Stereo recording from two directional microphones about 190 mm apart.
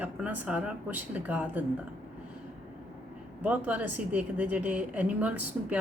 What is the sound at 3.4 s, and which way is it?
A woman's voice, 5° right (ahead or behind).